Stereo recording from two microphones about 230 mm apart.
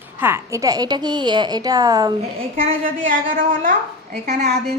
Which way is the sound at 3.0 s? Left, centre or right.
Right.